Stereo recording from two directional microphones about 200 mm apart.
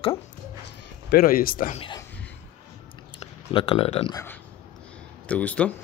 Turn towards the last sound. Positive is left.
turn(degrees=5)  # may be behind; listen again after turning